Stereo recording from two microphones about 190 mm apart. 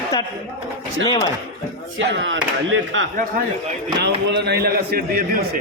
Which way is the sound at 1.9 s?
80° right.